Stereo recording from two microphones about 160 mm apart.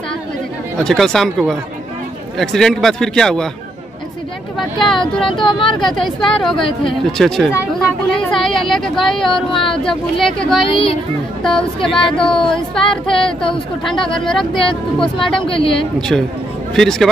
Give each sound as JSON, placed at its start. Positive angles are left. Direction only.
{"t": 0.7, "sound": "speech", "side_deg": 5}
{"t": 4.6, "sound": "speech", "side_deg": 0}
{"t": 5.3, "sound": "speech", "side_deg": 30}
{"t": 5.8, "sound": "speech", "side_deg": 0}
{"t": 10.7, "sound": "speech", "side_deg": 35}
{"t": 11.4, "sound": "speech", "side_deg": 5}
{"t": 13.1, "sound": "speech", "side_deg": 35}
{"t": 13.8, "sound": "speech", "side_deg": 5}
{"t": 14.7, "sound": "speech", "side_deg": 30}
{"t": 16.0, "sound": "speech", "side_deg": 5}